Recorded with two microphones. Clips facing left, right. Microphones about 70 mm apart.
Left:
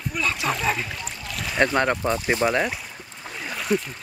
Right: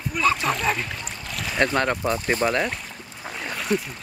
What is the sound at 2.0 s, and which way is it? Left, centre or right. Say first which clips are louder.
Speech: left 1 dB; centre.